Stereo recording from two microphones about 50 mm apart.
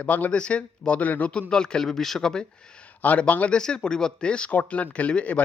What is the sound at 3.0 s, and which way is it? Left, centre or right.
Speech, left.